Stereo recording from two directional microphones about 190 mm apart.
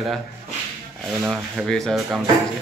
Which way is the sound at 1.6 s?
5° left (ahead or behind).